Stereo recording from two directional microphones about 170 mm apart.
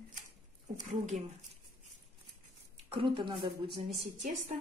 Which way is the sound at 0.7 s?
45° right (ahead or behind).